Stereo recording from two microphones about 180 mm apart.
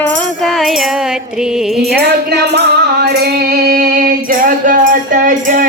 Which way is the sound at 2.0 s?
65° right (ahead or behind).